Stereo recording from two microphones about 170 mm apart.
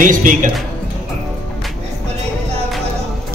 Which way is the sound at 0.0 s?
50° right (ahead or behind).